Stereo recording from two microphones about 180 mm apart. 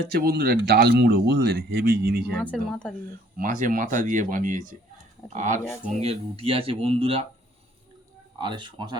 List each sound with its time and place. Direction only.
0.2 s speech: 55° right (ahead or behind)
2.4 s speech: 5° left (ahead or behind)
3.3 s speech: 45° right (ahead or behind)
8.4 s speech: 25° right (ahead or behind)